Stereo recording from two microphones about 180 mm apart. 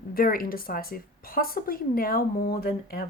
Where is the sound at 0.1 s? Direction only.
55° left (ahead or behind).